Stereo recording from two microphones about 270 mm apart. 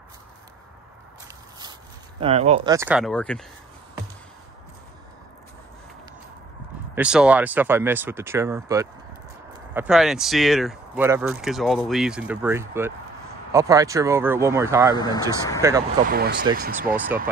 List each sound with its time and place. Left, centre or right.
1.6 s speech: centre
7.0 s speech: centre
15.0 s speech: centre
16.0 s speech: right